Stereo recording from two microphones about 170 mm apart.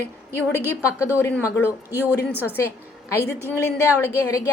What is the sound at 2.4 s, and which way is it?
A woman's voice, 10° left (ahead or behind).